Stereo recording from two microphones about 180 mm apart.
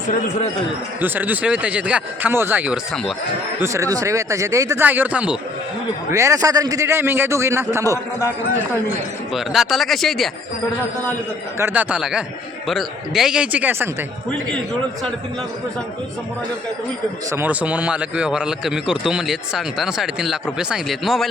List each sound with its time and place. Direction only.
1.0 s a man's voice: 10° right (ahead or behind)
9.3 s a man's voice: centre (ahead or behind)
11.5 s a man's voice: 10° right (ahead or behind)
17.3 s a man's voice: 10° right (ahead or behind)